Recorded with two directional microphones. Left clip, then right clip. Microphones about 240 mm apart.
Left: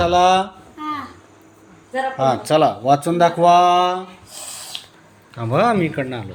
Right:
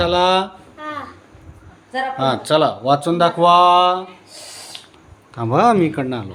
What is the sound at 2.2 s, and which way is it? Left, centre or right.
Speech, centre.